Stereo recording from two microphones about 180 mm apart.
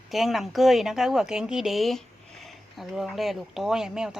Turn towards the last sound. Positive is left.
turn(degrees=-5)  # may be behind; listen again after turning